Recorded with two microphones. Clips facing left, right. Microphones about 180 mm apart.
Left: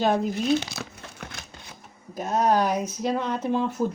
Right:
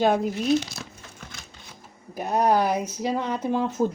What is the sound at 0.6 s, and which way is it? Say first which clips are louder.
Crumpling: left 2 dB; 65° left (ahead or behind).